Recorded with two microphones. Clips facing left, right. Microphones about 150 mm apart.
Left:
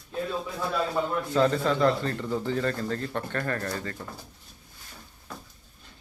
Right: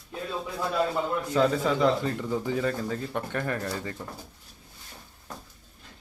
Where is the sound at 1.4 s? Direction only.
10° right (ahead or behind).